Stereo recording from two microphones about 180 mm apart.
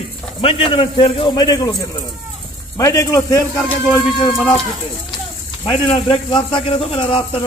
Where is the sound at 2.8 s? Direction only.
15° left (ahead or behind).